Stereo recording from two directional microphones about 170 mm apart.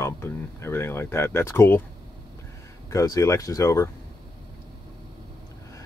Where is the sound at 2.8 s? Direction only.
20° left (ahead or behind).